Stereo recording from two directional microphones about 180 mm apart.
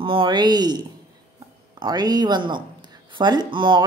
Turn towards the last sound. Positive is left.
turn(degrees=-25)  # may be behind; listen again after turning